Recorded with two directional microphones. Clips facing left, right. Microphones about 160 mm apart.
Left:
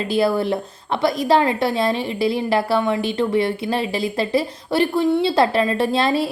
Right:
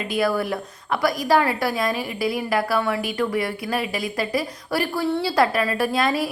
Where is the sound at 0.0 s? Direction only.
30° left (ahead or behind).